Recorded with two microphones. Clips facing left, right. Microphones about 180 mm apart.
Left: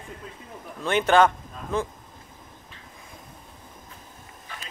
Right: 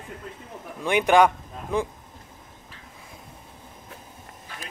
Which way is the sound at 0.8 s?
15° right (ahead or behind).